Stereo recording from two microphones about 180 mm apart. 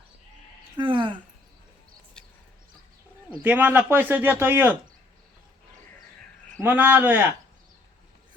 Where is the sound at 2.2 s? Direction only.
5° left (ahead or behind).